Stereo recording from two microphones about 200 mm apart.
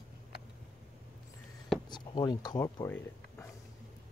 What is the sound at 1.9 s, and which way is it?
Speech, 20° left (ahead or behind).